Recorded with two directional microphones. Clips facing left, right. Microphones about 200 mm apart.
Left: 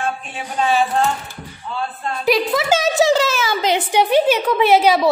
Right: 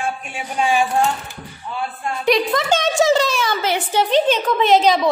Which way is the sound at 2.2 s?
Centre (ahead or behind).